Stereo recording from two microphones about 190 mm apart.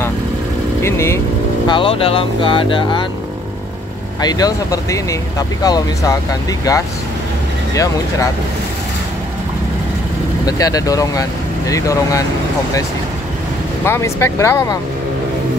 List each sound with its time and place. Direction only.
0.8 s speech: 15° left (ahead or behind)
1.7 s speech: 30° left (ahead or behind)
4.2 s speech: 20° left (ahead or behind)
10.4 s speech: 20° left (ahead or behind)
13.8 s speech: 15° left (ahead or behind)